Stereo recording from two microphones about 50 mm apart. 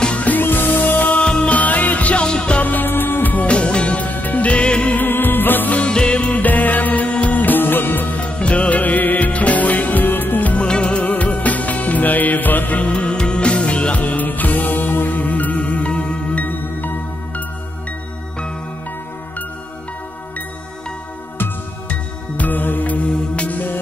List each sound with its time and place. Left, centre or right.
0.0 s music: left
0.3 s music: left
1.2 s music: centre
1.5 s music: left
2.2 s music: centre
2.6 s music: left
3.4 s music: left
4.9 s music: left
5.8 s music: centre; by 8.2 s left
8.2 s music: left
10.6 s music: centre; by 12.9 s left
12.9 s music: left
22.4 s music: left